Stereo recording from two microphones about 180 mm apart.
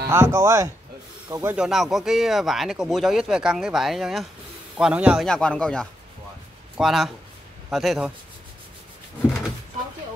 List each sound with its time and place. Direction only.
0.1 s speech: 15° right (ahead or behind)